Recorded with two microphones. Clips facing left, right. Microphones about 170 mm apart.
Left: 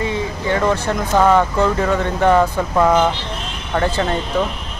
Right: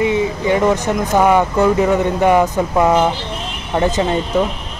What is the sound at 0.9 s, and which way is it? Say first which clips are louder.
Speech: left 1 dB; 15° right (ahead or behind).